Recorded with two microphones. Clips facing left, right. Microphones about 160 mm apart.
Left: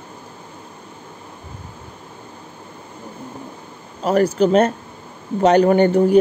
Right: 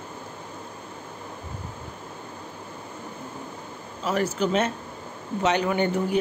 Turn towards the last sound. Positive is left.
turn(degrees=45)  # may be behind; listen again after turning